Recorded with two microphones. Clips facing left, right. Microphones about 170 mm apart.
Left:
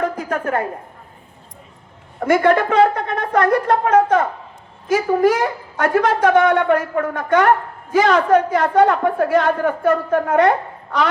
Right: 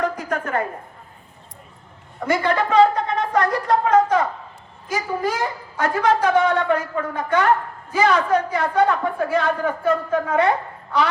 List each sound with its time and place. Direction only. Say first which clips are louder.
0.0 s a sound: left 2 dB; 55° left (ahead or behind)
2.2 s a man's voice: left 6 dB; 55° left (ahead or behind)
4.9 s a man's voice: left 9 dB; 60° left (ahead or behind)